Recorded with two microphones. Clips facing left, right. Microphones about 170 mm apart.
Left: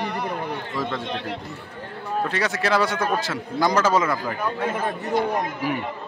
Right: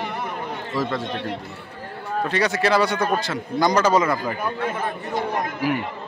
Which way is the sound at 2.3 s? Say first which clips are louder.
Right 4 dB; centre (ahead or behind).